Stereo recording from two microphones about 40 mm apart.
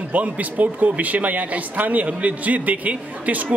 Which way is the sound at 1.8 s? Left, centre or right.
Right.